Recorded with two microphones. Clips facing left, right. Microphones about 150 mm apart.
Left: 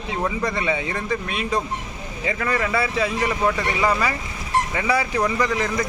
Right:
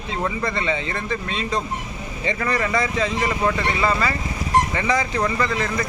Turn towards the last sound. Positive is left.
turn(degrees=10)  # may be behind; listen again after turning